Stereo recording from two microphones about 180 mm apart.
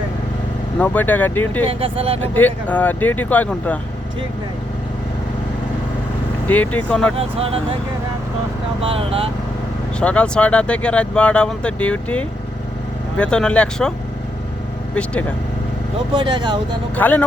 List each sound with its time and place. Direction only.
0.8 s speech: 10° left (ahead or behind)
1.6 s speech: 30° right (ahead or behind)
2.2 s speech: 10° left (ahead or behind)
6.5 s speech: 10° left (ahead or behind)
7.2 s speech: 35° right (ahead or behind)
8.8 s speech: 30° right (ahead or behind)
10.0 s speech: 5° left (ahead or behind)
16.1 s speech: 25° right (ahead or behind)
16.9 s speech: 10° left (ahead or behind)